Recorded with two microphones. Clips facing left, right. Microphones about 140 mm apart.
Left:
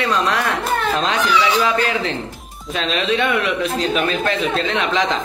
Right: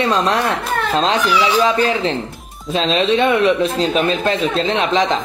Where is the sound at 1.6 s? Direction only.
30° right (ahead or behind).